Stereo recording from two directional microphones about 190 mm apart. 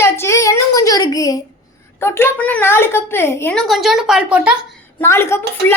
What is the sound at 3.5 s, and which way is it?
Speech, centre (ahead or behind).